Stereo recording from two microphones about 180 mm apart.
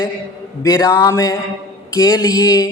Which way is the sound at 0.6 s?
20° left (ahead or behind).